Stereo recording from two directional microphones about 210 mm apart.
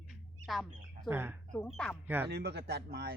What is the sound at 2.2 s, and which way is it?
Speech, 50° right (ahead or behind).